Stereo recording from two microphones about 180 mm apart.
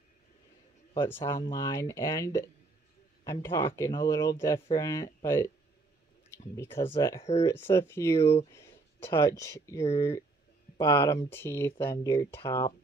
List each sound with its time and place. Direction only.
1.0 s speech: 10° left (ahead or behind)
6.5 s speech: 15° left (ahead or behind)
8.5 s a sound: 15° left (ahead or behind)
9.4 s speech: 15° left (ahead or behind)